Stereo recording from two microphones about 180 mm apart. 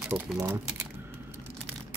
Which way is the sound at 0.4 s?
15° right (ahead or behind).